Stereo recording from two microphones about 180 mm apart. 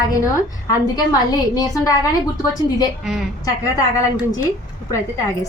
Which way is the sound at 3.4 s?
20° left (ahead or behind).